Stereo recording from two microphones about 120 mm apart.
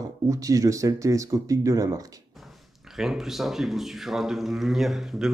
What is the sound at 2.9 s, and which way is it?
Speech, 5° right (ahead or behind).